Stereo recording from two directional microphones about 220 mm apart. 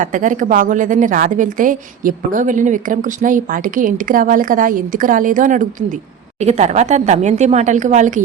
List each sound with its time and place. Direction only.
0.0 s a woman's voice: 35° right (ahead or behind)